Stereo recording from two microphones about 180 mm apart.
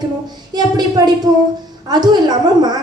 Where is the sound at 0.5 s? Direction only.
25° right (ahead or behind).